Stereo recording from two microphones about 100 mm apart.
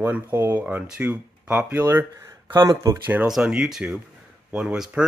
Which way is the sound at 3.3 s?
5° right (ahead or behind).